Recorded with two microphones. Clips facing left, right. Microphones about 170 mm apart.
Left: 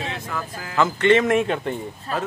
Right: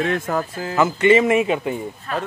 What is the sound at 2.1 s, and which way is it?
Speech, 35° left (ahead or behind).